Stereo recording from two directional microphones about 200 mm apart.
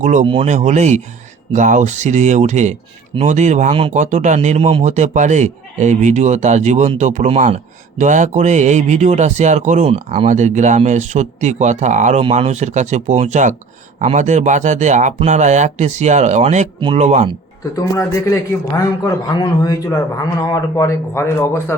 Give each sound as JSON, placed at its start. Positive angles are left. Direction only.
{"t": 0.0, "sound": "speech", "side_deg": -35}
{"t": 17.7, "sound": "speech", "side_deg": 15}